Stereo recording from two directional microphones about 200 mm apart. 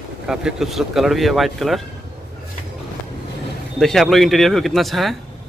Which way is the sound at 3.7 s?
Centre (ahead or behind).